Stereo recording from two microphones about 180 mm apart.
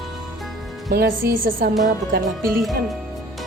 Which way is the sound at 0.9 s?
55° right (ahead or behind).